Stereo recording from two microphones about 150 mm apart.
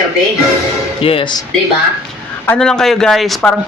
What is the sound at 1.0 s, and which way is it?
Speech, 35° left (ahead or behind).